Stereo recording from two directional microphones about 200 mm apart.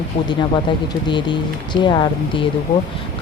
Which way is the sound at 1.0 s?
25° left (ahead or behind).